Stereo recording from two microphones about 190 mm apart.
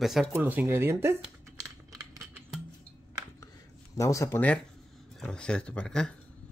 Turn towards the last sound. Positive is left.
turn(degrees=5)  # may be behind; listen again after turning